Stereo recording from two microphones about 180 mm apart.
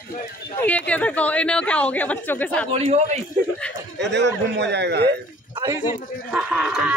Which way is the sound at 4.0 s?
75° right (ahead or behind).